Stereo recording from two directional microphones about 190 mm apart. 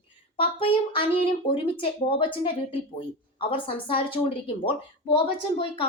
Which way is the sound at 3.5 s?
30° left (ahead or behind).